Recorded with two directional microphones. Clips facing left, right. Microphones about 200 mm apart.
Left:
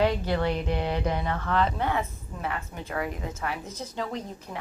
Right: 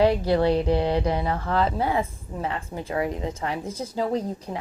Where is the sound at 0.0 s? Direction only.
35° right (ahead or behind).